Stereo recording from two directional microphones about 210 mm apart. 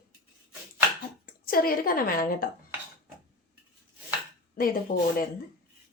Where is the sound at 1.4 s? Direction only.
45° left (ahead or behind).